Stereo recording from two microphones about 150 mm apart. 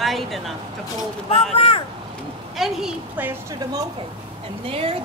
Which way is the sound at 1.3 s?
45° left (ahead or behind).